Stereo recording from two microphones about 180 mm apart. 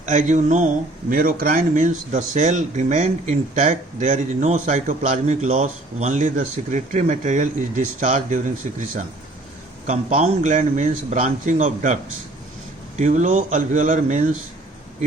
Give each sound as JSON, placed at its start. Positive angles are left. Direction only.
{"t": 0.0, "sound": "speech", "side_deg": -40}
{"t": 1.1, "sound": "speech", "side_deg": -50}
{"t": 9.8, "sound": "speech", "side_deg": -45}
{"t": 13.0, "sound": "speech", "side_deg": -40}